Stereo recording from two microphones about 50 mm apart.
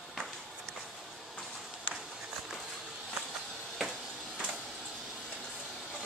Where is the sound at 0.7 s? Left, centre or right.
Right.